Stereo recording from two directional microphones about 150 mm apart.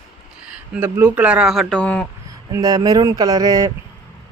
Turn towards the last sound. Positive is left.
turn(degrees=-25)  # may be behind; listen again after turning